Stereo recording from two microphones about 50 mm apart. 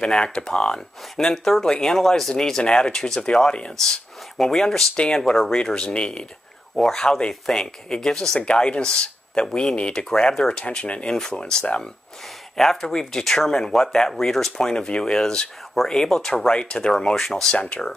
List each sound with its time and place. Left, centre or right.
0.0 s speech: centre
6.7 s speech: centre
7.0 s speech: centre
10.6 s speech: left
12.8 s speech: centre
15.7 s speech: centre
16.9 s speech: centre
17.6 s speech: left